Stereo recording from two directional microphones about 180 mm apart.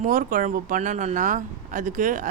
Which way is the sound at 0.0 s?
45° right (ahead or behind).